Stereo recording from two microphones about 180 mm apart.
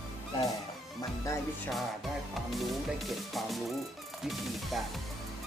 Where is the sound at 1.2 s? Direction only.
15° left (ahead or behind).